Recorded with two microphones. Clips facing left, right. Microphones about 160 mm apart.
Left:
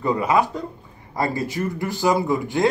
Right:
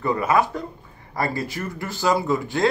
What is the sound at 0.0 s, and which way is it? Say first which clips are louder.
Speech: left 1 dB; 15° left (ahead or behind).